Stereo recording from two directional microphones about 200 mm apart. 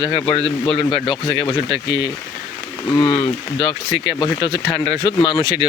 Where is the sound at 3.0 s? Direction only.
25° left (ahead or behind).